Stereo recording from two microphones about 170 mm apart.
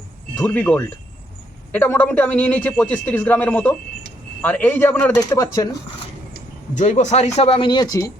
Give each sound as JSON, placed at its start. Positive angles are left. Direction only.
{"t": 0.3, "sound": "a man's voice", "side_deg": 10}
{"t": 5.2, "sound": "speech", "side_deg": 20}
{"t": 6.7, "sound": "speech", "side_deg": 45}